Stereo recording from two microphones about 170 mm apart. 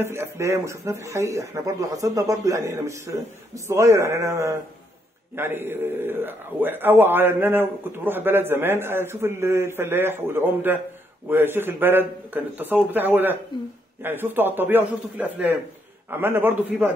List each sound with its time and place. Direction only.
0.0 s a man's voice: 15° right (ahead or behind)